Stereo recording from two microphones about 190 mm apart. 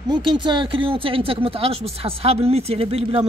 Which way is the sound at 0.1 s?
25° right (ahead or behind).